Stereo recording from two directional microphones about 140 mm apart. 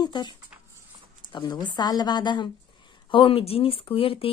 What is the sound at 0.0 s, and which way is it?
Speech, 30° left (ahead or behind).